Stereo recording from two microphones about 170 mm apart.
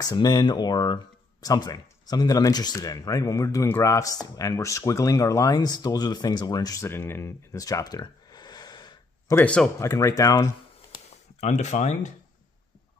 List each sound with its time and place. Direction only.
0.0 s speech: 25° left (ahead or behind)
9.4 s speech: 5° left (ahead or behind)
9.8 s speech: 20° left (ahead or behind)
11.4 s speech: 40° left (ahead or behind)